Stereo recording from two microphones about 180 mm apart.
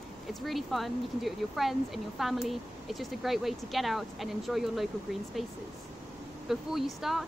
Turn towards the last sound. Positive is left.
turn(degrees=0)  # may be behind; listen again after turning